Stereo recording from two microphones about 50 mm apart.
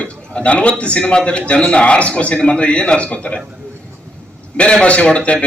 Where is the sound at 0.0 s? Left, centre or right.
Left.